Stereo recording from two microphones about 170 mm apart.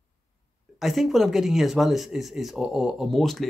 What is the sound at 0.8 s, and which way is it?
Speech, centre (ahead or behind).